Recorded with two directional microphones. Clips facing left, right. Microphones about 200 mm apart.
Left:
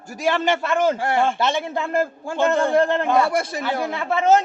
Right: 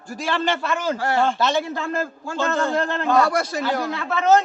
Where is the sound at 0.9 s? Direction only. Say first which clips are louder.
Even; 15° left (ahead or behind).